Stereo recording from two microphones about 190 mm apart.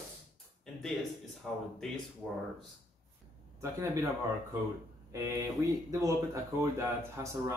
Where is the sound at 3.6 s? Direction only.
15° right (ahead or behind).